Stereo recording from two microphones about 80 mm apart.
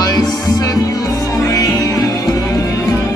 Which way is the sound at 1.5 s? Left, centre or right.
Left.